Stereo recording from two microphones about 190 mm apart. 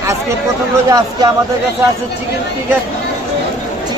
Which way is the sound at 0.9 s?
20° right (ahead or behind).